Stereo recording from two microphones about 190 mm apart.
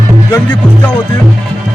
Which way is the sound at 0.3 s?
20° left (ahead or behind).